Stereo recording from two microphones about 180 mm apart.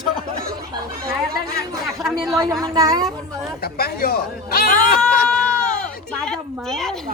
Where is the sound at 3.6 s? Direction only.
60° left (ahead or behind).